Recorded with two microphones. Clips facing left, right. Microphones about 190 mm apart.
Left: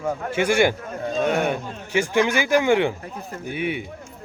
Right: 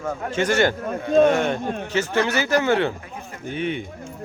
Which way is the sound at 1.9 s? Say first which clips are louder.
Left 3 dB; 15° left (ahead or behind).